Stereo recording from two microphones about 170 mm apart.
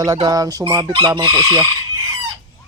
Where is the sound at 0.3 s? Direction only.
20° right (ahead or behind).